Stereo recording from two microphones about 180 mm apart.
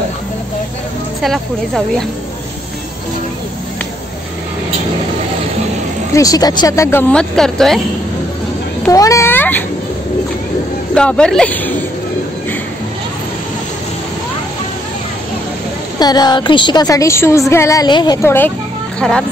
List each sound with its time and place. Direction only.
1.2 s speech: centre (ahead or behind)
6.1 s speech: 20° left (ahead or behind); by 7.8 s centre (ahead or behind)
8.9 s speech: 15° left (ahead or behind)
11.0 s speech: 5° left (ahead or behind)
16.0 s a woman's voice: 20° left (ahead or behind); by 19.2 s 5° left (ahead or behind)